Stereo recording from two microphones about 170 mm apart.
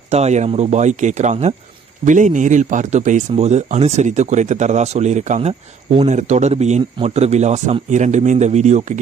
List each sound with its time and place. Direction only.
0.1 s speech: 40° right (ahead or behind)